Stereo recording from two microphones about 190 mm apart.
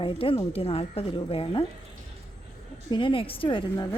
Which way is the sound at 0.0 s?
30° left (ahead or behind).